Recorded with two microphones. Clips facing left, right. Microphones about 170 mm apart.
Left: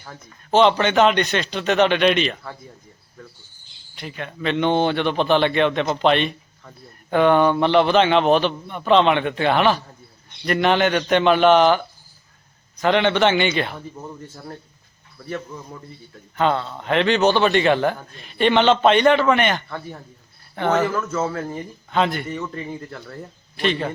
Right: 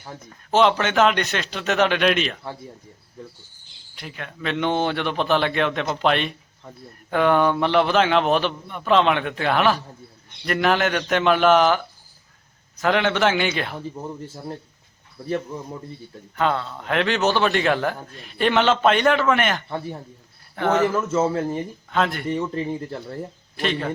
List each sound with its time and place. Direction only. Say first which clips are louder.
0.5 s a man's voice: left 2 dB; 5° right (ahead or behind)
3.9 s a man's voice: left 4 dB; centre (ahead or behind)
13.9 s speech: right 3 dB; 15° right (ahead or behind)
16.3 s a man's voice: left 2 dB; centre (ahead or behind)
19.6 s speech: right 3 dB; 25° right (ahead or behind)
20.6 s a man's voice: even; 5° right (ahead or behind)
20.9 s speech: right 3 dB; 25° right (ahead or behind)
21.8 s speech: left 3 dB; centre (ahead or behind)
22.3 s speech: right 4 dB; 30° right (ahead or behind)
23.6 s a man's voice: left 2 dB; centre (ahead or behind)